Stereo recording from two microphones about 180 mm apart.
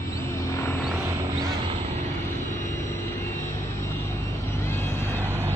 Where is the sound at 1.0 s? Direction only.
20° right (ahead or behind).